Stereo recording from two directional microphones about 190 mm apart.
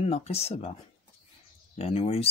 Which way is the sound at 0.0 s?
35° left (ahead or behind).